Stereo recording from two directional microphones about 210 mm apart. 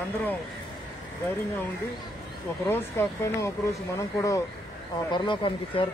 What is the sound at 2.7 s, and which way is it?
Speech, 10° left (ahead or behind).